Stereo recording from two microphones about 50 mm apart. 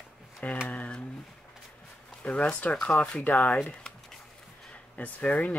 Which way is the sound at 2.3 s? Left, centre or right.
Left.